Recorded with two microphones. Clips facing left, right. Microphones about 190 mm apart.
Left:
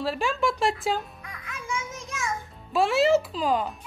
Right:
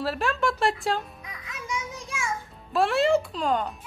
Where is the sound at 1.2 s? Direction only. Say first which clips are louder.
Left 1 dB; 15° right (ahead or behind).